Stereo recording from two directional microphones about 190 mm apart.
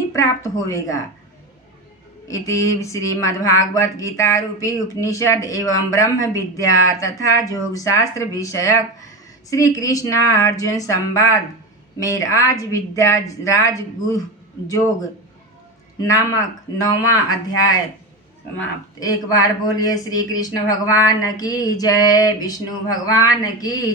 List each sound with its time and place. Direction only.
0.1 s speech: 15° left (ahead or behind)
2.2 s speech: 15° left (ahead or behind)
16.0 s speech: 15° left (ahead or behind)
18.9 s speech: 20° left (ahead or behind)